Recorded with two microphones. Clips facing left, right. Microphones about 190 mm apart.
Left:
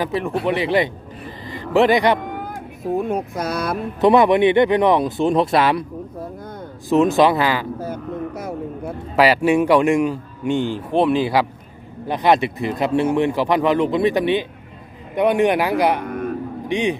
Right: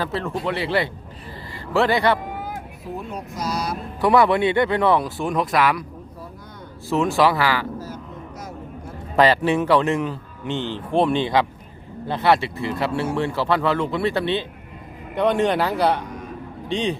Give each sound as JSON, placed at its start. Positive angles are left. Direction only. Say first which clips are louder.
{"t": 0.0, "sound": "a man's voice", "louder": "left 4 dB", "side_deg": 15}
{"t": 2.8, "sound": "speech", "louder": "left 12 dB", "side_deg": 50}
{"t": 4.0, "sound": "speech", "louder": "left 4 dB", "side_deg": 20}
{"t": 6.9, "sound": "speech", "louder": "left 4 dB", "side_deg": 20}
{"t": 7.8, "sound": "vehicle", "louder": "left 8 dB", "side_deg": 60}
{"t": 9.1, "sound": "a man's voice", "louder": "left 2 dB", "side_deg": 10}
{"t": 16.0, "sound": "a sound", "louder": "left 8 dB", "side_deg": 60}
{"t": 16.6, "sound": "a man's voice", "louder": "left 3 dB", "side_deg": 15}